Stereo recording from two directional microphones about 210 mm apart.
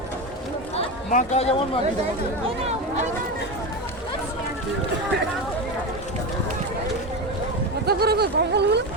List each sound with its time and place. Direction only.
0.8 s speech: 30° left (ahead or behind)
7.9 s speech: 50° right (ahead or behind)